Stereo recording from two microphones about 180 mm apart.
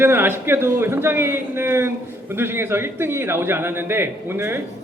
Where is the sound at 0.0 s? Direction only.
10° right (ahead or behind).